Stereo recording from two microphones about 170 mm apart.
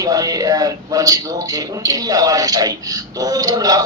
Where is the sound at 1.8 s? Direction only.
20° right (ahead or behind).